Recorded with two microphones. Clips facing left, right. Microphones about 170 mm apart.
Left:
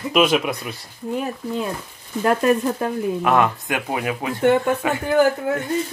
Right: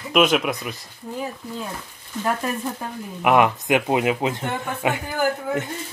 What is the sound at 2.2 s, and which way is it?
Speech, 65° left (ahead or behind).